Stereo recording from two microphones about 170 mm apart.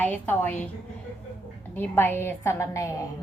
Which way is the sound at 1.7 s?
10° left (ahead or behind).